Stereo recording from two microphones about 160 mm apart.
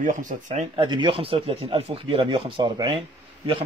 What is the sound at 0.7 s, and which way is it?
Speech, 30° right (ahead or behind).